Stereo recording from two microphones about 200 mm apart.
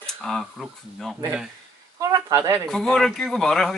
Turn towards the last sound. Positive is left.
turn(degrees=0)  # may be behind; listen again after turning